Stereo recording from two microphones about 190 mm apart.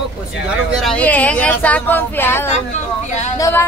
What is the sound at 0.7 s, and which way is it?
Speech, centre (ahead or behind).